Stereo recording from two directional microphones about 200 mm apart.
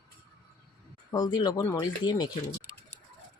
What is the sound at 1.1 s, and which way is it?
Speech, 20° left (ahead or behind).